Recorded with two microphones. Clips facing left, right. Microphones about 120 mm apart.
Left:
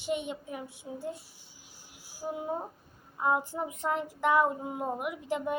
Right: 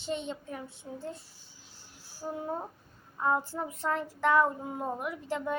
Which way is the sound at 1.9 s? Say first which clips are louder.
Left 1 dB; 10° left (ahead or behind).